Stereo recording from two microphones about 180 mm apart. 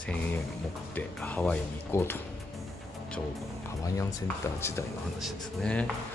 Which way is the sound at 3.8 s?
15° left (ahead or behind).